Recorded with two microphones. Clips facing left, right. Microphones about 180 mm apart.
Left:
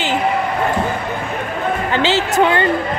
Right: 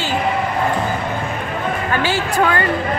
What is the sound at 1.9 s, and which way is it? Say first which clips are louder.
Speech: left 3 dB; 20° left (ahead or behind).